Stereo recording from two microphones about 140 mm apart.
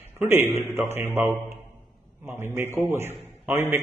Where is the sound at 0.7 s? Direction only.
15° right (ahead or behind).